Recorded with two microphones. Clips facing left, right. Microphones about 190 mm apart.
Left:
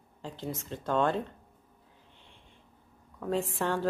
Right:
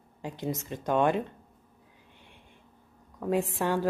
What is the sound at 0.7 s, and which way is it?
Speech, 15° right (ahead or behind).